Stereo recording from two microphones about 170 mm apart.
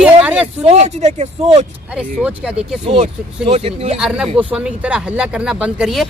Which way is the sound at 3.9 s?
5° right (ahead or behind).